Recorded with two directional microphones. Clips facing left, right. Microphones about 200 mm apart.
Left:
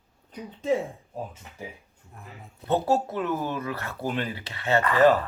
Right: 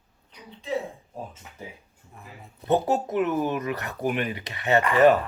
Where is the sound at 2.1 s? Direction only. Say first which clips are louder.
Even; centre (ahead or behind).